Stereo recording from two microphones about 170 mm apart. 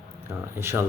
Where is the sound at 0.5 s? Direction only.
15° right (ahead or behind).